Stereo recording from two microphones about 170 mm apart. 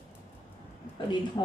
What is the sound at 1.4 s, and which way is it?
Speech, 20° left (ahead or behind).